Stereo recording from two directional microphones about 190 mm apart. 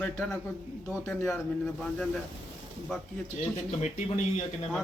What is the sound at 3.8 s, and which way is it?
Speech, 40° left (ahead or behind).